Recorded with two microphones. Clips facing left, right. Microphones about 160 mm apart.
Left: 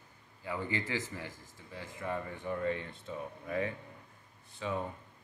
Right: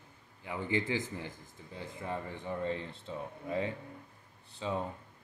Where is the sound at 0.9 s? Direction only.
90° left.